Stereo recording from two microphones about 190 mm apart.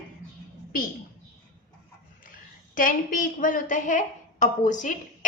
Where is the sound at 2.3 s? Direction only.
45° left (ahead or behind).